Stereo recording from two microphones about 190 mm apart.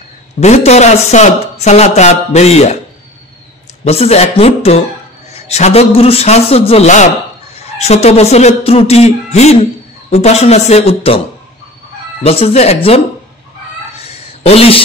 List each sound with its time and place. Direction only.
0.4 s speech: 35° left (ahead or behind)
3.8 s speech: 35° left (ahead or behind)
12.2 s speech: 30° left (ahead or behind)
13.9 s a sound: 35° left (ahead or behind)